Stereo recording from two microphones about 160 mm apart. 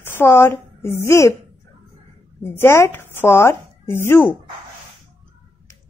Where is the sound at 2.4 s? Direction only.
15° left (ahead or behind).